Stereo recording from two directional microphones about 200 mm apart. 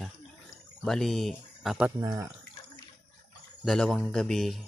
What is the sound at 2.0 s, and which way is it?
Speech, 15° right (ahead or behind).